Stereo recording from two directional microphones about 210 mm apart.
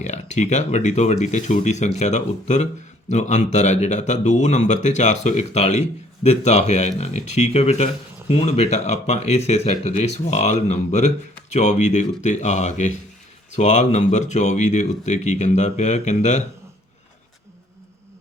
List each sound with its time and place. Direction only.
0.0 s speech: 35° left (ahead or behind)